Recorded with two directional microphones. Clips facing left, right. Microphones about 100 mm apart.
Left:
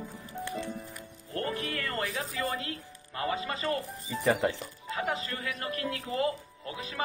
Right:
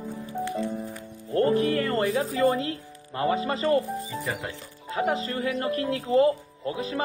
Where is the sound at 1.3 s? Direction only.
30° right (ahead or behind).